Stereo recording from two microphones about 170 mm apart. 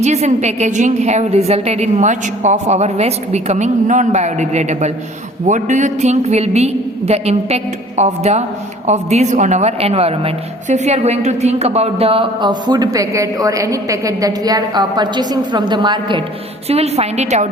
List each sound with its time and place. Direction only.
0.0 s a woman's voice: 40° right (ahead or behind)
16.6 s a woman's voice: 35° right (ahead or behind)